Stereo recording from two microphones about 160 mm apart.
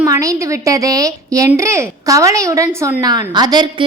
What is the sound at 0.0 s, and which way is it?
A woman's voice, 20° right (ahead or behind).